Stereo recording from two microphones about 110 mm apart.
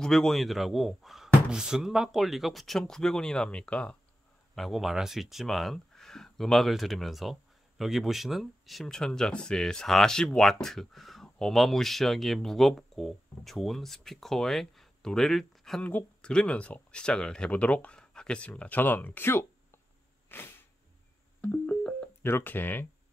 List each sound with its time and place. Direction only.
0.0 s speech: 5° left (ahead or behind); by 19.4 s 20° left (ahead or behind)
20.2 s a sound: 20° left (ahead or behind)
21.4 s music: 10° left (ahead or behind)
22.2 s speech: 20° left (ahead or behind)